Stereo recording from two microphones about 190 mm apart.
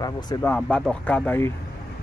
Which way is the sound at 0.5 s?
5° left (ahead or behind).